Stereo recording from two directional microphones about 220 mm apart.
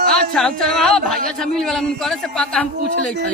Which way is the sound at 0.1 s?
5° left (ahead or behind).